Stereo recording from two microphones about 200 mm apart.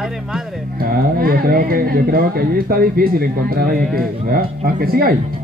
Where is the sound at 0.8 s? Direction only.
50° right (ahead or behind).